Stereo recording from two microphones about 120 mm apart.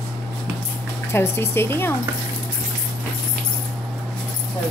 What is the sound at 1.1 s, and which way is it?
Speech, 20° left (ahead or behind).